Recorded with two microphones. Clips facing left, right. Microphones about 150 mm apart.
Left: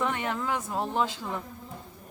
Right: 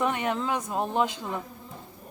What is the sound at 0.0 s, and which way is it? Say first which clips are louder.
A woman's voice: right 3 dB; 15° right (ahead or behind).